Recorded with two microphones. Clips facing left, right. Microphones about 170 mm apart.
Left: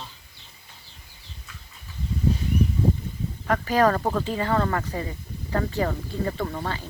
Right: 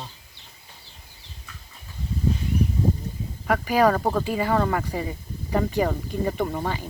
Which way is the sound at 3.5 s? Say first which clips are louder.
Right 1 dB; 10° right (ahead or behind).